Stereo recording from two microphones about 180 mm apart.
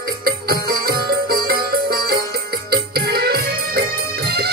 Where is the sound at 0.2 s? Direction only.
55° right (ahead or behind).